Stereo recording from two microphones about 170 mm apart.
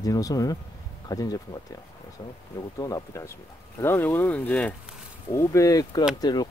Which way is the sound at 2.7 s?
20° left (ahead or behind).